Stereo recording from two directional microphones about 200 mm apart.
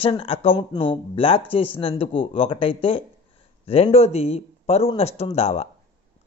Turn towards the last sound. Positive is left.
turn(degrees=30)  # may be behind; listen again after turning